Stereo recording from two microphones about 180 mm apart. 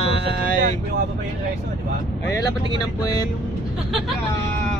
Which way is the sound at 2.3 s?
20° left (ahead or behind).